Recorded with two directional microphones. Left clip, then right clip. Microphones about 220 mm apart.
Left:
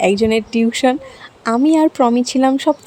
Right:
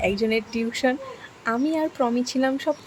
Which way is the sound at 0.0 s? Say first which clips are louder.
Left 9 dB; 35° left (ahead or behind).